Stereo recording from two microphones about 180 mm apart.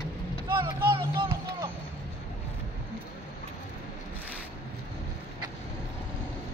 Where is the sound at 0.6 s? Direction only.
25° right (ahead or behind).